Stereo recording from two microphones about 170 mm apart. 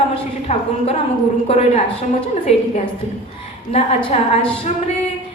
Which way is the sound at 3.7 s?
35° left (ahead or behind).